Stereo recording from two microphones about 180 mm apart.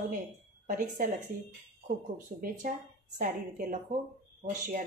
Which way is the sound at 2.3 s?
45° right (ahead or behind).